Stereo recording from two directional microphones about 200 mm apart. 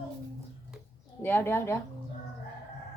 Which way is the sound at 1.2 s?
10° left (ahead or behind).